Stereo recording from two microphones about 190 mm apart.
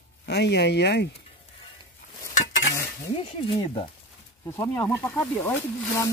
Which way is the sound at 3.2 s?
30° left (ahead or behind).